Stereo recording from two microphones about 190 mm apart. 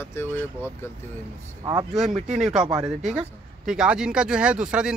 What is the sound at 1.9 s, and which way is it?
Speech, centre (ahead or behind).